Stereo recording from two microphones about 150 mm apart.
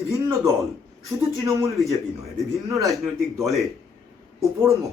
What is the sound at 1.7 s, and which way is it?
A man's voice, centre (ahead or behind).